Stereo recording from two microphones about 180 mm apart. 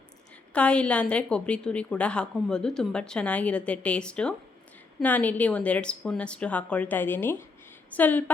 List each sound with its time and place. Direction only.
0.5 s a woman's voice: 5° left (ahead or behind)